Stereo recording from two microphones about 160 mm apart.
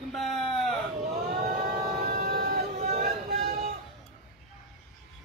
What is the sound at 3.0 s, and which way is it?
Vehicle, 70° right (ahead or behind).